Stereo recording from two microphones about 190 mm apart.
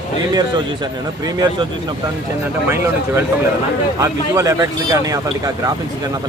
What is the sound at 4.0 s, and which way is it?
Speech, 15° right (ahead or behind).